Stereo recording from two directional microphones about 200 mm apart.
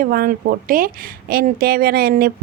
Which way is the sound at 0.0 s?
45° right (ahead or behind).